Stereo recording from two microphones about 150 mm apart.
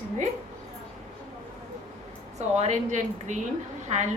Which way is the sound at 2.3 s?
50° right (ahead or behind).